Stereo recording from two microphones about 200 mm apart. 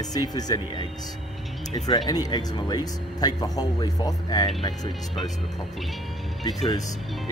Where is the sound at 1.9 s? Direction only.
20° left (ahead or behind).